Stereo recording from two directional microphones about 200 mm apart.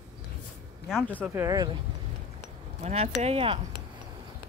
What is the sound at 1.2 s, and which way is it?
Speech, 15° right (ahead or behind).